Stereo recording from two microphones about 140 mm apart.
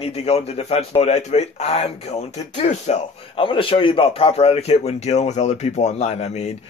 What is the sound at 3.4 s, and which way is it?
A man's voice, 40° left (ahead or behind).